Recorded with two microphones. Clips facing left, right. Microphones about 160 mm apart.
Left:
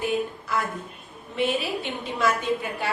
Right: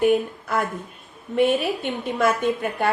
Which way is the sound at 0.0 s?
55° right (ahead or behind).